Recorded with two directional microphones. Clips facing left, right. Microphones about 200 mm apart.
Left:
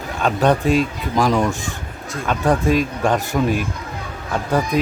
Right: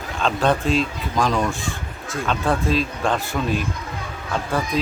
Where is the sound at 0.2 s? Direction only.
15° left (ahead or behind).